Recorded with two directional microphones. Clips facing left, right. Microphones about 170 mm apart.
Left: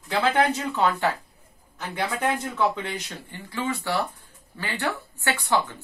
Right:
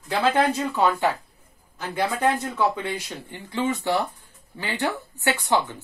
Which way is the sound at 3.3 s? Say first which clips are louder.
Right 4 dB; 20° right (ahead or behind).